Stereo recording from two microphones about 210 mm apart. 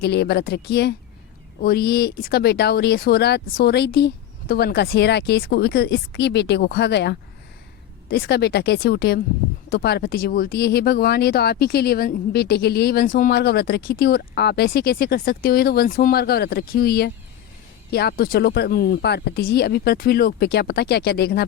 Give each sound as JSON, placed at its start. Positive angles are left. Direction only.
{"t": 0.0, "sound": "speech", "side_deg": 50}